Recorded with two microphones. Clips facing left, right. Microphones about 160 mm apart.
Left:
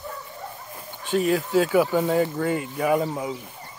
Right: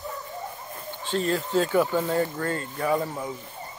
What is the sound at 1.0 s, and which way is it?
Speech, 10° left (ahead or behind).